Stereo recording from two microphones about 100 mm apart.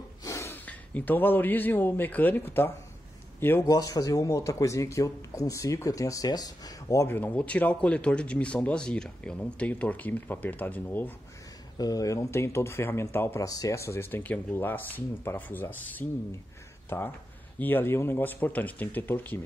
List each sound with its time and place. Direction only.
0.2 s snort: 30° left (ahead or behind)
0.7 s a man's voice: 15° left (ahead or behind)
3.6 s speech: 40° left (ahead or behind)
7.1 s speech: 20° left (ahead or behind)
11.8 s speech: 35° left (ahead or behind)
13.5 s speech: 35° left (ahead or behind)